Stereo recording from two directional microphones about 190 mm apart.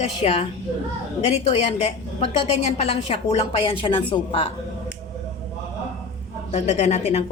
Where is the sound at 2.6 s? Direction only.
35° left (ahead or behind).